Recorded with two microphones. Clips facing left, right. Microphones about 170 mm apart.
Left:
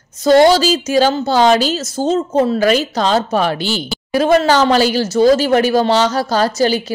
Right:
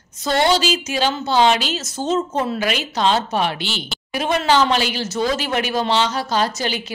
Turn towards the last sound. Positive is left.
turn(degrees=35)  # may be behind; listen again after turning